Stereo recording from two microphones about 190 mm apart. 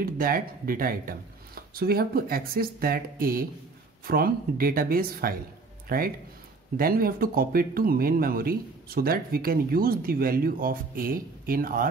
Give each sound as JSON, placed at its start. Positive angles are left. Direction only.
{"t": 0.0, "sound": "speech", "side_deg": -50}